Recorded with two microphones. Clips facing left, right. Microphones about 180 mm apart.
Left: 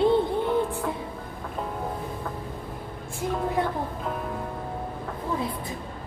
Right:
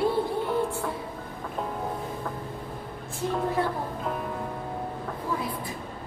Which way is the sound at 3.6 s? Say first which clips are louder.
Left 1 dB; 15° left (ahead or behind).